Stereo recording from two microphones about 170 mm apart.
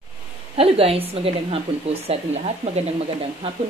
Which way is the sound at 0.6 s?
35° right (ahead or behind).